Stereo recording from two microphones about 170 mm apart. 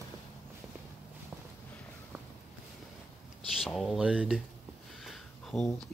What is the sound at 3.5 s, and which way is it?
Speech, centre (ahead or behind).